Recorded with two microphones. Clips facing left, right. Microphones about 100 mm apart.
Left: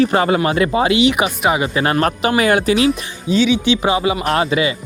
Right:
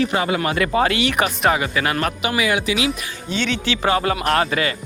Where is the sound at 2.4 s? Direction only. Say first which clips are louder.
Left 6 dB; 45° left (ahead or behind).